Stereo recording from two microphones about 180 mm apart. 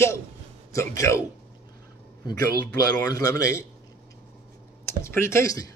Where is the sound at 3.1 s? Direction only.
15° left (ahead or behind).